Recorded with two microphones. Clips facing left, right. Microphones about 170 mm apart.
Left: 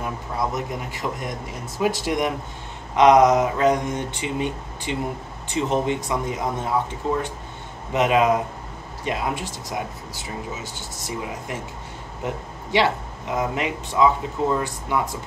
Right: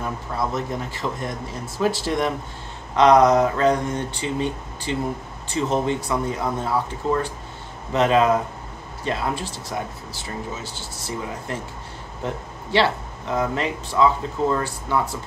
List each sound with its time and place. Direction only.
0.0 s a sound: 15° left (ahead or behind)
0.7 s speech: 15° left (ahead or behind)
12.7 s speech: 15° left (ahead or behind)